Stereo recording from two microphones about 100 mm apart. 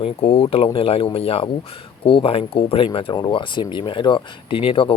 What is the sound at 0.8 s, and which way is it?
Speech, 70° left (ahead or behind).